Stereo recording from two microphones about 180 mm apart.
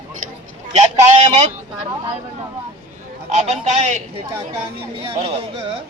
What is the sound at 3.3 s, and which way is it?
Speech, 40° right (ahead or behind).